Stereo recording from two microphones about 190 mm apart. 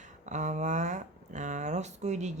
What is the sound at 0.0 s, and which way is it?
Speech, 40° right (ahead or behind).